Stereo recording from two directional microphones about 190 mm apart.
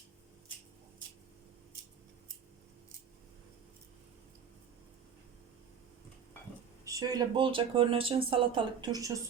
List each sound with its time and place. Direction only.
6.8 s speech: 20° right (ahead or behind)